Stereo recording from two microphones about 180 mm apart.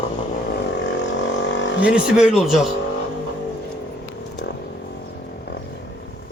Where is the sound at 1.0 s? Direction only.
90° left.